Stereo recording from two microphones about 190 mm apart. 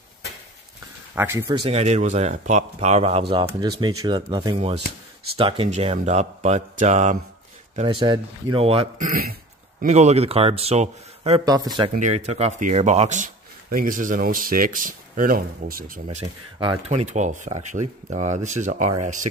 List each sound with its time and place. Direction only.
1.1 s speech: 10° right (ahead or behind)
1.5 s speech: 35° right (ahead or behind)
7.7 s speech: 25° right (ahead or behind)
8.9 s throat clearing: 45° right (ahead or behind)
9.8 s speech: 35° right (ahead or behind)
11.4 s speech: 20° right (ahead or behind)
11.9 s speech: 40° right (ahead or behind)